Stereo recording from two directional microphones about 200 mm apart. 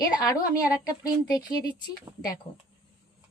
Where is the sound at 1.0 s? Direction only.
20° left (ahead or behind).